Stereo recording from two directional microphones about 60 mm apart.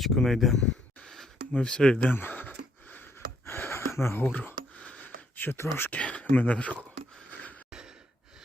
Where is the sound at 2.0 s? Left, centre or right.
Left.